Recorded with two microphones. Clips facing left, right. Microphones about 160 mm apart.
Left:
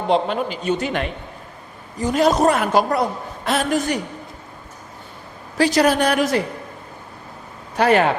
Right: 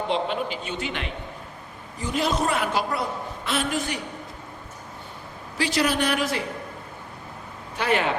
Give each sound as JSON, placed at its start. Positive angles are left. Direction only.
{"t": 0.1, "sound": "a woman's voice", "side_deg": 45}
{"t": 5.5, "sound": "a woman's voice", "side_deg": 45}
{"t": 7.8, "sound": "a woman's voice", "side_deg": 45}